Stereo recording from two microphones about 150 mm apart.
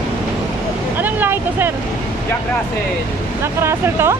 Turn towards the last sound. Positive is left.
turn(degrees=-15)  # may be behind; listen again after turning